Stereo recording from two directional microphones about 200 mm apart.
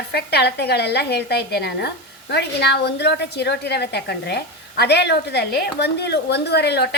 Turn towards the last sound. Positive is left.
turn(degrees=55)  # may be behind; listen again after turning